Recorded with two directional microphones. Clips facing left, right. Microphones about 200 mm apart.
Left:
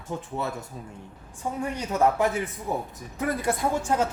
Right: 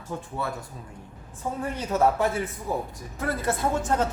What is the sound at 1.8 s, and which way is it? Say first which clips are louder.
Speech: even; 15° left (ahead or behind).